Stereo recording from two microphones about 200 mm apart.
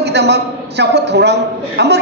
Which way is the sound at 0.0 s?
60° right (ahead or behind).